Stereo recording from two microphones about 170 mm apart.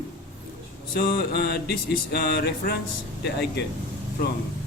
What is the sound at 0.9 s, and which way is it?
Music, 65° left (ahead or behind).